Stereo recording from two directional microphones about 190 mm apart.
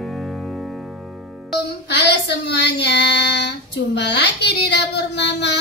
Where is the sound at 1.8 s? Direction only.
65° left (ahead or behind).